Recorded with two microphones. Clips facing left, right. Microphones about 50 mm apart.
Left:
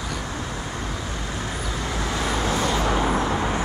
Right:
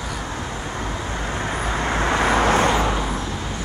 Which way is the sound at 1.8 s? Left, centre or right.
Right.